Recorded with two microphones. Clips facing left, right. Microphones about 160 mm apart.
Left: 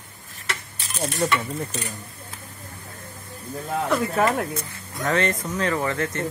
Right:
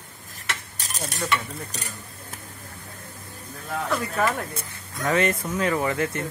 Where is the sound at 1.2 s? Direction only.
30° left (ahead or behind).